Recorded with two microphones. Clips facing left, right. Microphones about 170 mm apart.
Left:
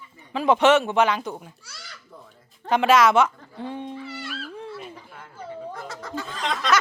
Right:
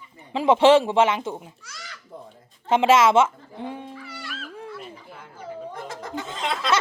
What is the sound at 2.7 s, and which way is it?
A woman's voice, 25° right (ahead or behind).